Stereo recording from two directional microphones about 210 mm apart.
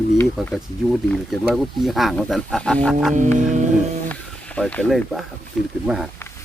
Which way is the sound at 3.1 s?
35° right (ahead or behind).